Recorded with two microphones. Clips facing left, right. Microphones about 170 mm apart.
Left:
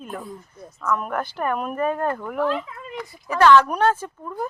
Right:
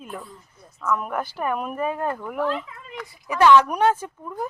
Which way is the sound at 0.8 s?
5° right (ahead or behind).